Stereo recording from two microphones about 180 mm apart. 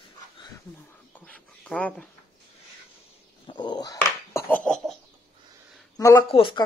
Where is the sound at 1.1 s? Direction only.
5° left (ahead or behind).